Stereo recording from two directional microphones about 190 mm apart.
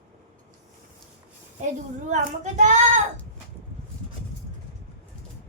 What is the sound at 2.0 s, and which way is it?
Speech, 40° right (ahead or behind).